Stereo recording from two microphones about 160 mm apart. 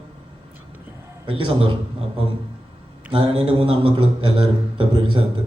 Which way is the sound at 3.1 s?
35° right (ahead or behind).